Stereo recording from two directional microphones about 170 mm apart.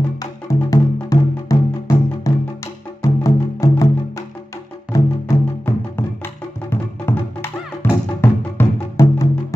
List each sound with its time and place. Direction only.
0.2 s music: 20° left (ahead or behind)
4.9 s music: 15° left (ahead or behind)